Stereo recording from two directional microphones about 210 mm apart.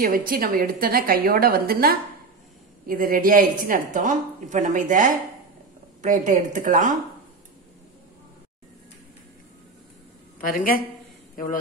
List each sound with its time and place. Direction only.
0.0 s a woman's voice: 45° right (ahead or behind)
10.4 s speech: 40° left (ahead or behind)